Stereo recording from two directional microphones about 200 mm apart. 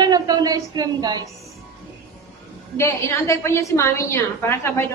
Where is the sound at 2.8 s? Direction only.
15° left (ahead or behind).